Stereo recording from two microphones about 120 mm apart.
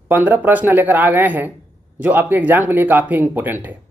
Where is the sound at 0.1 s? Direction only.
15° right (ahead or behind).